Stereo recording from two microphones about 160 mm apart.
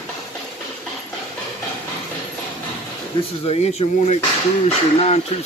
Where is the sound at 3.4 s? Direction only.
40° left (ahead or behind).